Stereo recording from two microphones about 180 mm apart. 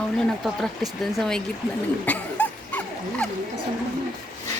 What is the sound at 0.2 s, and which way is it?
Speech, centre (ahead or behind).